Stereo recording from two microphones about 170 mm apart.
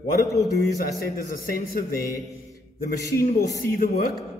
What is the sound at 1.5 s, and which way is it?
Speech, 60° left (ahead or behind).